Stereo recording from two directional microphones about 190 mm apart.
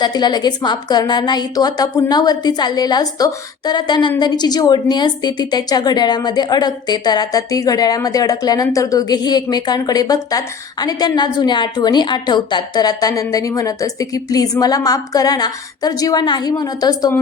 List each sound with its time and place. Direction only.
0.0 s a woman's voice: 20° left (ahead or behind)